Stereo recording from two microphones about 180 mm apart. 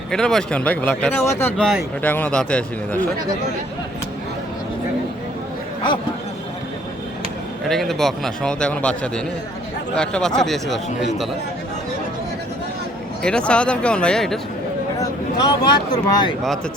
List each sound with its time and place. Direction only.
0.1 s speech: 5° left (ahead or behind)
7.7 s a man's voice: centre (ahead or behind)
13.2 s a man's voice: 5° left (ahead or behind)
14.9 s a sound: 20° left (ahead or behind)